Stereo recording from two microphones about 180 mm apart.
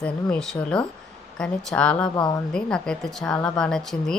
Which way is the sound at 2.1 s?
20° left (ahead or behind).